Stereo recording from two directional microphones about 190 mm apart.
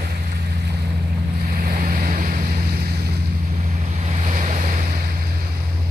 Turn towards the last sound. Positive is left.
turn(degrees=-40)  # may be behind; listen again after turning